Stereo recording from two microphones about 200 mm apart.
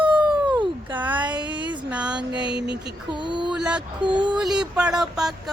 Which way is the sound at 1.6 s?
5° right (ahead or behind).